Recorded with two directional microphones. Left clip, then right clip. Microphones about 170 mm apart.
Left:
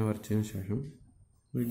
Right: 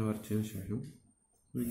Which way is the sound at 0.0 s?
55° left (ahead or behind).